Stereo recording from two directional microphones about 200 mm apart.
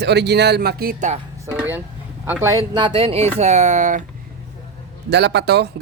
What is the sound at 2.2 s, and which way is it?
Speech, 10° right (ahead or behind).